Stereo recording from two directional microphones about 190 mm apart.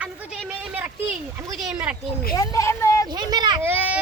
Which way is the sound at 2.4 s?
15° left (ahead or behind).